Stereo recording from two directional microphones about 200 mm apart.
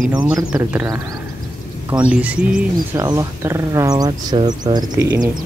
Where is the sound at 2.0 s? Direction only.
5° right (ahead or behind).